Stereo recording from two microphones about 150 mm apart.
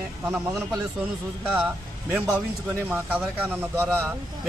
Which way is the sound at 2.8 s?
10° right (ahead or behind).